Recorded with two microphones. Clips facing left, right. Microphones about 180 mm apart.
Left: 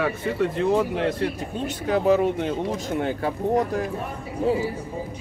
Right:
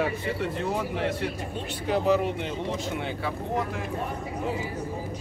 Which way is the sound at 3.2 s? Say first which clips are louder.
Left 7 dB; 40° left (ahead or behind).